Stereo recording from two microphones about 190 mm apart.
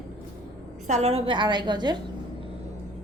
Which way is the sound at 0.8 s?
35° right (ahead or behind).